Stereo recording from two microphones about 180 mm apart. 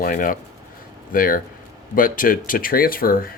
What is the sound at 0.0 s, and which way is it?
Speech, 50° left (ahead or behind).